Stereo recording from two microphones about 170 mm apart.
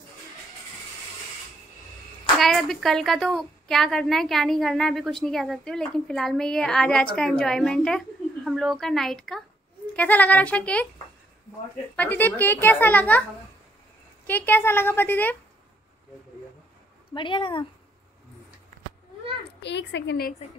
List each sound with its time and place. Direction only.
2.3 s a woman's voice: centre (ahead or behind)
11.9 s speech: 10° left (ahead or behind)
14.2 s speech: 10° left (ahead or behind)
17.1 s speech: 30° left (ahead or behind)
19.6 s a woman's voice: 90° left